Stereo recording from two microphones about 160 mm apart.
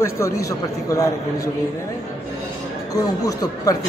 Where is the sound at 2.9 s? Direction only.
25° left (ahead or behind).